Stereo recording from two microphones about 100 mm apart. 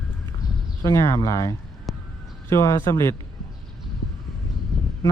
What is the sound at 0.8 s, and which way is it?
Speech, 30° left (ahead or behind).